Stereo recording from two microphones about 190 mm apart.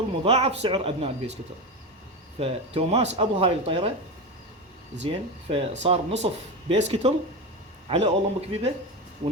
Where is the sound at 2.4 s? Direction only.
35° right (ahead or behind).